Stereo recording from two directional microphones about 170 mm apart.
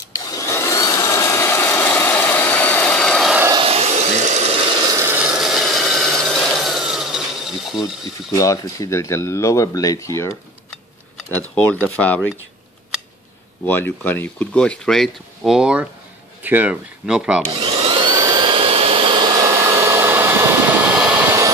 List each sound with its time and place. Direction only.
0.1 s vacuum cleaner: 20° left (ahead or behind); by 3.3 s 5° left (ahead or behind)
3.5 s a sound: 35° right (ahead or behind)
4.8 s a sound: 15° right (ahead or behind)
7.8 s speech: 20° left (ahead or behind)
11.5 s speech: 10° left (ahead or behind)
13.7 s speech: 10° left (ahead or behind); by 17.4 s 5° right (ahead or behind)
17.6 s vacuum cleaner: 35° right (ahead or behind)
18.0 s vacuum cleaner: 20° right (ahead or behind)